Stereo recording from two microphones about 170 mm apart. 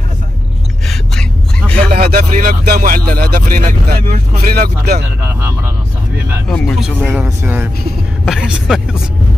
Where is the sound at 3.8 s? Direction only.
60° right (ahead or behind).